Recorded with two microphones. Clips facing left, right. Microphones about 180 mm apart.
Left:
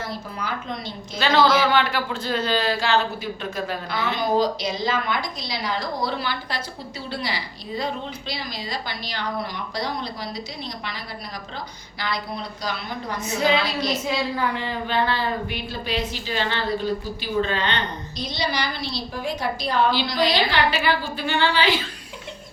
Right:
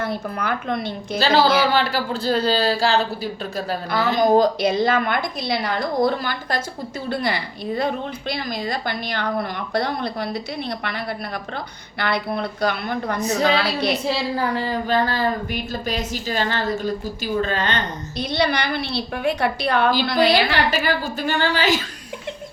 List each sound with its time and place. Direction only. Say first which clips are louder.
0.0 s a woman's voice: right 6 dB; 60° right (ahead or behind)
1.2 s a woman's voice: right 1 dB; 35° right (ahead or behind); by 13.1 s 60° right (ahead or behind)
13.1 s speech: right 1 dB; 40° right (ahead or behind)
13.7 s a woman's voice: right 3 dB; 65° right (ahead or behind)
14.0 s a woman's voice: right 2 dB; 35° right (ahead or behind); by 19.9 s 65° right (ahead or behind)
19.9 s a woman's voice: right 4 dB; 55° right (ahead or behind)